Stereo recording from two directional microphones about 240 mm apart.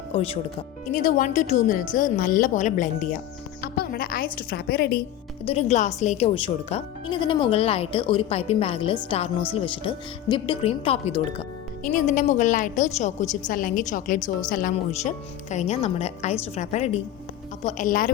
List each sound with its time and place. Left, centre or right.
0.1 s speech: left
5.5 s speech: left